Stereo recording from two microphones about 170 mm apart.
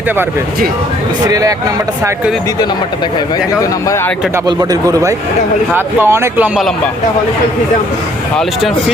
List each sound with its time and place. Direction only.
1.3 s speech: 20° right (ahead or behind)
4.4 s speech: 20° right (ahead or behind)